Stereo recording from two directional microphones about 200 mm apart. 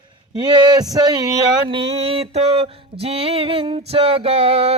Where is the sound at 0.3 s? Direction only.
20° right (ahead or behind).